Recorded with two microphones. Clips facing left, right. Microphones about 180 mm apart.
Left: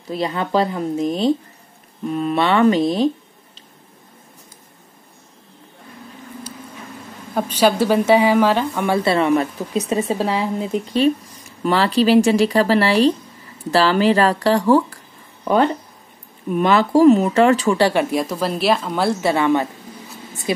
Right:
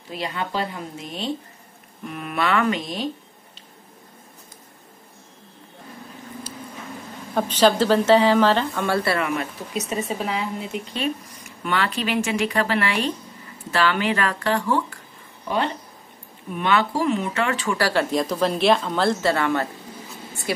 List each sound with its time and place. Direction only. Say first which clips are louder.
0.1 s speech: left 7 dB; 35° left (ahead or behind)
7.3 s speech: left 1 dB; 10° left (ahead or behind); by 14.8 s 35° left (ahead or behind)
15.4 s speech: left 8 dB; 45° left (ahead or behind)
17.7 s speech: left 5 dB; 20° left (ahead or behind)
18.1 s speech: left 1 dB; 5° left (ahead or behind)